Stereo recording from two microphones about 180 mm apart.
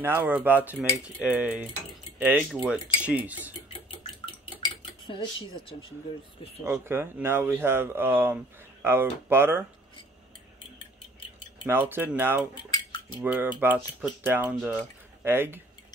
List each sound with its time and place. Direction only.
0.0 s speech: 10° right (ahead or behind)
4.6 s cutlery: 25° left (ahead or behind)
6.6 s speech: 10° right (ahead or behind)
11.6 s speech: 10° right (ahead or behind)
12.7 s cutlery: 25° left (ahead or behind)
13.2 s speech: 10° right (ahead or behind)